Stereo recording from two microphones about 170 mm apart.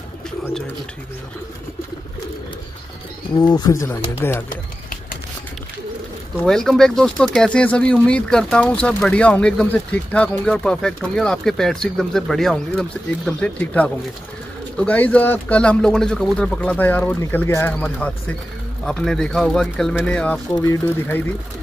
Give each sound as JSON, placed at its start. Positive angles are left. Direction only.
{"t": 3.3, "sound": "speech", "side_deg": 25}
{"t": 4.5, "sound": "bird", "side_deg": 55}
{"t": 6.4, "sound": "speech", "side_deg": 5}